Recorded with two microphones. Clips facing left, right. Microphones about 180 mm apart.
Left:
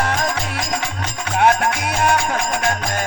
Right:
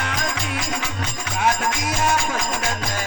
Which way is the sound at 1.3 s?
60° left (ahead or behind).